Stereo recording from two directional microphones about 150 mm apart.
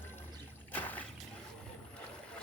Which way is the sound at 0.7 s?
10° left (ahead or behind).